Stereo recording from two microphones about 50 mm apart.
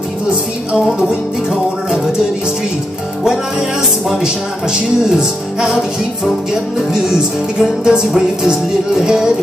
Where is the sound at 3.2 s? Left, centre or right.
Centre.